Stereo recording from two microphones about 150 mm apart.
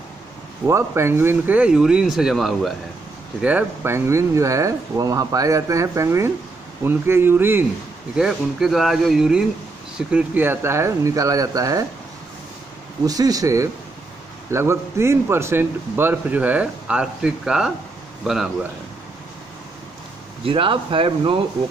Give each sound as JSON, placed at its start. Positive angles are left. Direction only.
{"t": 0.7, "sound": "a man's voice", "side_deg": -20}
{"t": 8.2, "sound": "speech", "side_deg": 0}
{"t": 13.0, "sound": "a man's voice", "side_deg": -25}
{"t": 20.4, "sound": "speech", "side_deg": -35}